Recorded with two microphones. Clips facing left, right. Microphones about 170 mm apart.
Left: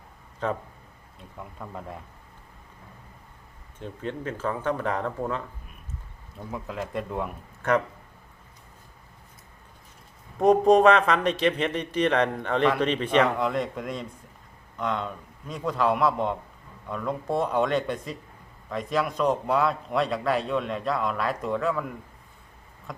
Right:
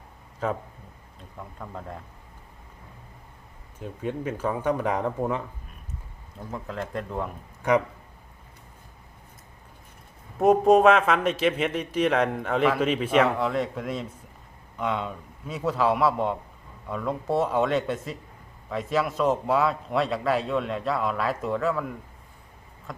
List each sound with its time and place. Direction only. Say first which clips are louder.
0.4 s a man's voice: even; 5° right (ahead or behind)
3.8 s speech: right 2 dB; 10° right (ahead or behind)
6.5 s a man's voice: even; 5° left (ahead or behind)
7.6 s speech: right 2 dB; 10° right (ahead or behind)
10.3 s a man's voice: even; 5° right (ahead or behind)